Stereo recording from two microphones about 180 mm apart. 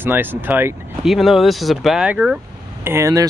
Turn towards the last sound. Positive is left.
turn(degrees=-15)  # may be behind; listen again after turning